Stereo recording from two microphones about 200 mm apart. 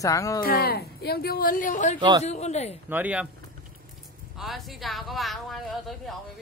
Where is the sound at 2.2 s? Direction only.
35° left (ahead or behind).